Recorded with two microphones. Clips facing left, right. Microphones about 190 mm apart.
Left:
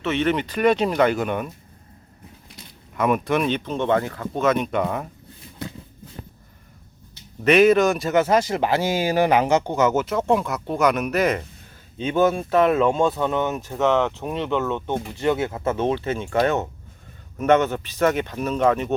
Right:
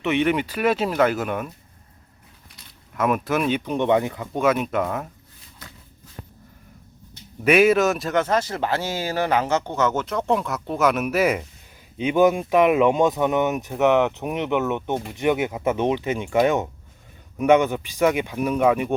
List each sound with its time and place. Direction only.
0.0 s speech: 15° right (ahead or behind)
2.9 s speech: centre (ahead or behind)
7.4 s speech: 5° right (ahead or behind)